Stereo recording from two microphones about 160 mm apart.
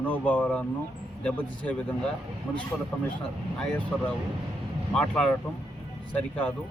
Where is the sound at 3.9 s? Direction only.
5° left (ahead or behind).